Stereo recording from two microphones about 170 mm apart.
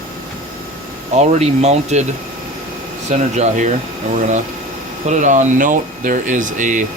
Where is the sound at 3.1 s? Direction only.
45° right (ahead or behind).